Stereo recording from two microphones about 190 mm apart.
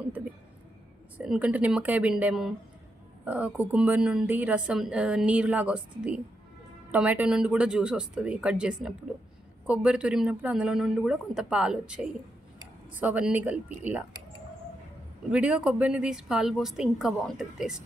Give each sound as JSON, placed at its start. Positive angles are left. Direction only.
{"t": 1.1, "sound": "a woman's voice", "side_deg": -5}
{"t": 15.3, "sound": "a woman's voice", "side_deg": -5}